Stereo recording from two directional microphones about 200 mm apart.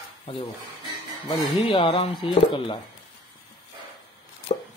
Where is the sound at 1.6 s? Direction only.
25° left (ahead or behind).